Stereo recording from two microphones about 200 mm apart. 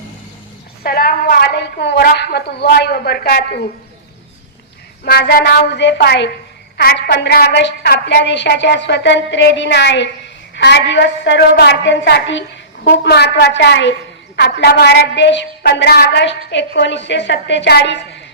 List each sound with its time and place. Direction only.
0.8 s a woman's voice: 50° left (ahead or behind)
5.0 s a woman's voice: 50° left (ahead or behind)